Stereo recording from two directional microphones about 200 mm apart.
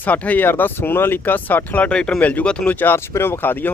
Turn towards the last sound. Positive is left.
turn(degrees=10)  # may be behind; listen again after turning